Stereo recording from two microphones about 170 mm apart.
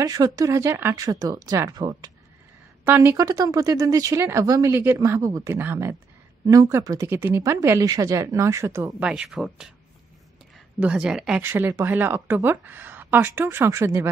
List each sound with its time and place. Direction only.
0.0 s speech: 20° right (ahead or behind)
9.0 s speech: 5° right (ahead or behind)
10.8 s speech: 5° right (ahead or behind)